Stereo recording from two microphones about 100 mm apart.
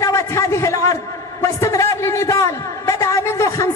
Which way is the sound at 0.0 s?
30° left (ahead or behind).